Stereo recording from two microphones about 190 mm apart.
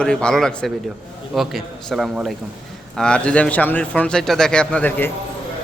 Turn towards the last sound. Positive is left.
turn(degrees=10)  # may be behind; listen again after turning